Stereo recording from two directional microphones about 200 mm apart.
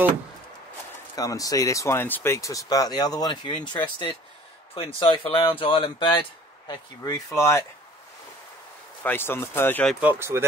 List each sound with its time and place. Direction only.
1.1 s speech: 15° left (ahead or behind)
9.0 s speech: 10° left (ahead or behind)
9.9 s speech: 10° right (ahead or behind)